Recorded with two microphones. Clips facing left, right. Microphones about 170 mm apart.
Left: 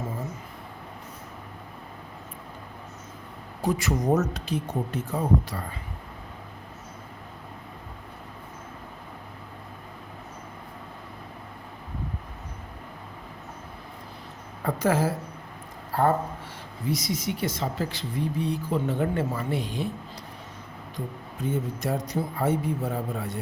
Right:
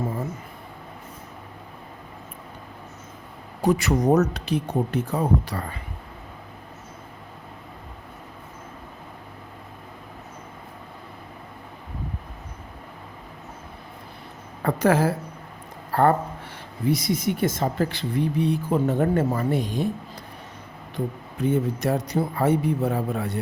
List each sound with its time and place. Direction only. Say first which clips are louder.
3.6 s speech: right 5 dB; 70° right (ahead or behind)
14.6 s a woman's voice: right 4 dB; 65° right (ahead or behind); by 19.9 s 45° right (ahead or behind)
21.4 s speech: right 6 dB; 65° right (ahead or behind)